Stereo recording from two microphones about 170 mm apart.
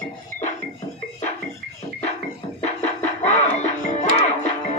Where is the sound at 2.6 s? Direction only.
40° left (ahead or behind).